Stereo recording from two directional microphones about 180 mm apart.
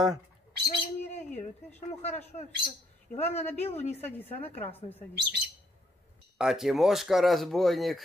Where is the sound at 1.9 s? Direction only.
35° left (ahead or behind).